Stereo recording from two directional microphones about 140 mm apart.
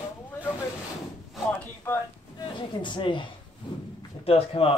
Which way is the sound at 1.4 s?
20° left (ahead or behind).